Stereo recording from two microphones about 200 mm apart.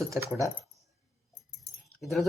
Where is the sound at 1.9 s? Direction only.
Centre (ahead or behind).